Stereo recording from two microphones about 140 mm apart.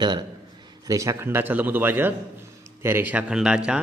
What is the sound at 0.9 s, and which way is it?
A man's voice, 20° right (ahead or behind).